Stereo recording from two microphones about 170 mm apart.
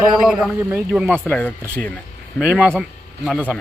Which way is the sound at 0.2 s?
5° right (ahead or behind).